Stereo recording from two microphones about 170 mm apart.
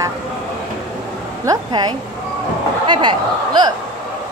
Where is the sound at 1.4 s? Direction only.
20° right (ahead or behind).